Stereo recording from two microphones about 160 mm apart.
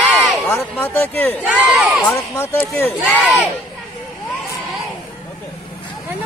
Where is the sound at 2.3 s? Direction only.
15° left (ahead or behind).